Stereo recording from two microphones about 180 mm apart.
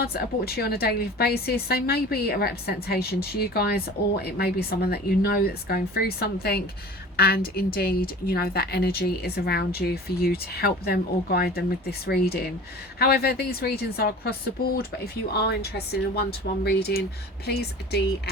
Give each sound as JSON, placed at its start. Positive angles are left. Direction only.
{"t": 0.0, "sound": "a woman's voice", "side_deg": 60}